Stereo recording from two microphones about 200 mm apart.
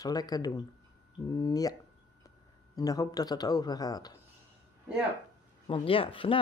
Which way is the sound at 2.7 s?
20° left (ahead or behind).